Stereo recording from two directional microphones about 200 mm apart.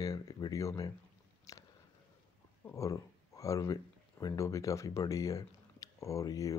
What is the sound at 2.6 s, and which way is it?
Speech, 15° left (ahead or behind).